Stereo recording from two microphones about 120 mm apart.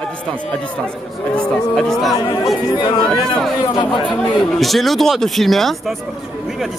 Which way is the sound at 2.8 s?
40° left (ahead or behind).